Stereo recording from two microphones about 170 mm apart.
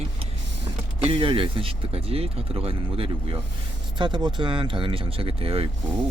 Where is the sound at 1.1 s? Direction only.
30° right (ahead or behind).